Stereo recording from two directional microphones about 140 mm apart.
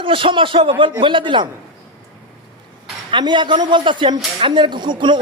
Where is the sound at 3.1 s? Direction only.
35° right (ahead or behind).